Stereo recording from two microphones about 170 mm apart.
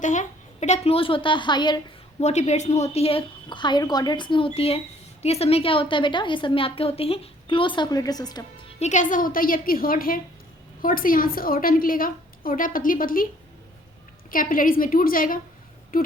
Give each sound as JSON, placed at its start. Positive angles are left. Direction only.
{"t": 0.0, "sound": "a woman's voice", "side_deg": 45}
{"t": 2.2, "sound": "a woman's voice", "side_deg": 40}
{"t": 8.8, "sound": "a woman's voice", "side_deg": 45}
{"t": 14.3, "sound": "a woman's voice", "side_deg": 55}
{"t": 15.9, "sound": "a sound", "side_deg": 60}